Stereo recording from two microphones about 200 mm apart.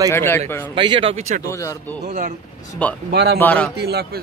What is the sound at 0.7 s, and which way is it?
Speech, 25° right (ahead or behind).